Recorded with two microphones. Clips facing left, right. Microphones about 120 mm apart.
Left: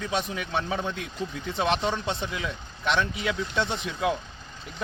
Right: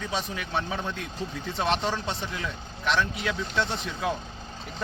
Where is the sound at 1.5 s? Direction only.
15° left (ahead or behind).